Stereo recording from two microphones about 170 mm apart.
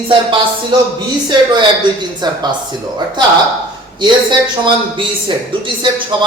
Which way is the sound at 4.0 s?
30° right (ahead or behind).